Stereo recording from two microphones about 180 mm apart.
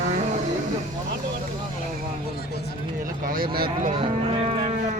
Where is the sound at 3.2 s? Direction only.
55° right (ahead or behind).